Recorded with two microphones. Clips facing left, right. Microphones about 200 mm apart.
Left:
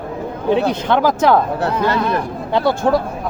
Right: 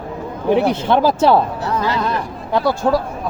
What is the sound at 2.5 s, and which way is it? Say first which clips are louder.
Speech: left 1 dB; 25° left (ahead or behind).